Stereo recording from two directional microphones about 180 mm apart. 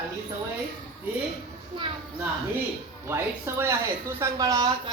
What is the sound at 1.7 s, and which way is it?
Speech, 25° right (ahead or behind).